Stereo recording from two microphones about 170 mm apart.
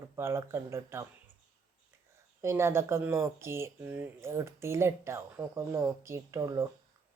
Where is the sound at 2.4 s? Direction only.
15° right (ahead or behind).